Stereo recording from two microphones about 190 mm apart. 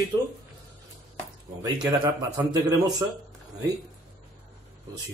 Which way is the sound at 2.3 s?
15° right (ahead or behind).